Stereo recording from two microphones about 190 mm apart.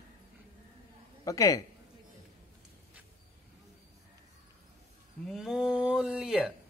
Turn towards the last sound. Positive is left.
turn(degrees=-5)  # may be behind; listen again after turning